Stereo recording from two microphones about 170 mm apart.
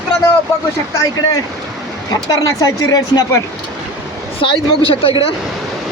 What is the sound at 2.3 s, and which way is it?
Speech, 20° left (ahead or behind).